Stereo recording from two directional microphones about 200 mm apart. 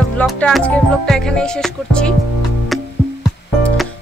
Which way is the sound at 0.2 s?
5° left (ahead or behind).